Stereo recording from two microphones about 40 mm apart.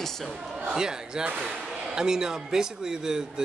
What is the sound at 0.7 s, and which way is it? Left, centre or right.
A man's voice, centre.